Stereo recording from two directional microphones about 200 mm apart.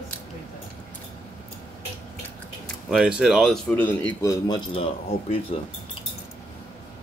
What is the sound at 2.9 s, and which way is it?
Speech, 5° right (ahead or behind).